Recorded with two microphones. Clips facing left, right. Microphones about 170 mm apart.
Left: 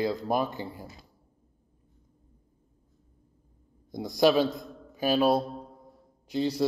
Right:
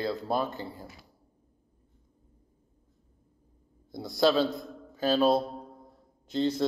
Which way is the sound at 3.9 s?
15° left (ahead or behind).